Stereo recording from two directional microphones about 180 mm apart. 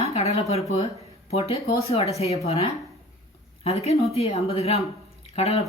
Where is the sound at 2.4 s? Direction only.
35° left (ahead or behind).